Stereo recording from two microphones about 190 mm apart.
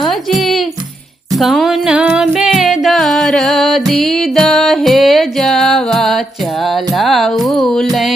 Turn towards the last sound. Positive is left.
turn(degrees=0)  # may be behind; listen again after turning